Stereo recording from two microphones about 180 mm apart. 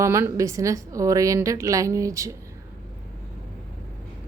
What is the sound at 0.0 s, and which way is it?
Speech, 15° right (ahead or behind).